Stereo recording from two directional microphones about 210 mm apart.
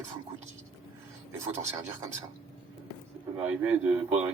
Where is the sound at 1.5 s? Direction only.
15° right (ahead or behind).